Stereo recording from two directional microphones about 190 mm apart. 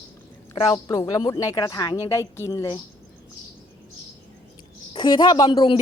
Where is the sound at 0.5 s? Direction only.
25° left (ahead or behind).